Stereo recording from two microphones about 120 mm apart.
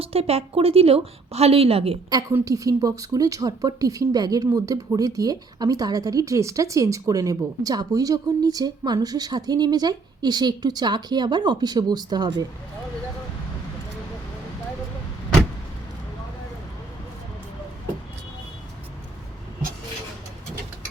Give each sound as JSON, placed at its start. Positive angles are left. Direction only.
{"t": 0.0, "sound": "speech", "side_deg": -55}
{"t": 2.3, "sound": "a woman's voice", "side_deg": -30}